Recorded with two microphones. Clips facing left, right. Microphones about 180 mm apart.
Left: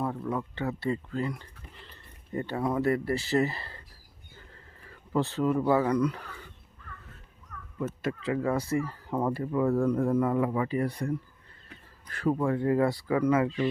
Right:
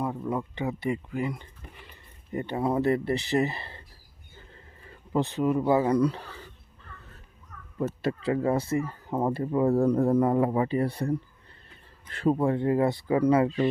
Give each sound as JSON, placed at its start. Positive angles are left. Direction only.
{"t": 0.0, "sound": "speech", "side_deg": -15}
{"t": 4.4, "sound": "a sound", "side_deg": -20}
{"t": 5.9, "sound": "a man's voice", "side_deg": -30}
{"t": 7.8, "sound": "speech", "side_deg": -35}
{"t": 9.7, "sound": "a man's voice", "side_deg": -40}